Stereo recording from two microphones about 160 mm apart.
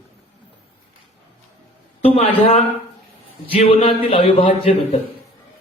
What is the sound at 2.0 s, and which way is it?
Speech, 40° left (ahead or behind).